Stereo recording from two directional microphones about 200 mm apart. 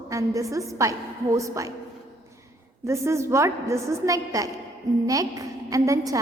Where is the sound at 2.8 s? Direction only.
15° right (ahead or behind).